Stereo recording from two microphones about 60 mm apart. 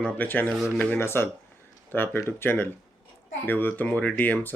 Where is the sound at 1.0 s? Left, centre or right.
Left.